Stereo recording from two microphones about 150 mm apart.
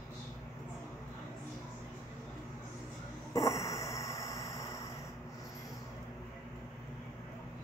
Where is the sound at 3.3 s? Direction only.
20° left (ahead or behind).